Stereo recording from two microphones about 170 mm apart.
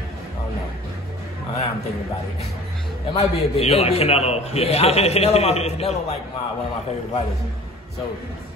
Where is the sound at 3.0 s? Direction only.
35° left (ahead or behind).